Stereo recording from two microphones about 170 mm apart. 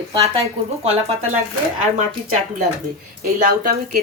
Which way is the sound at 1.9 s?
55° right (ahead or behind).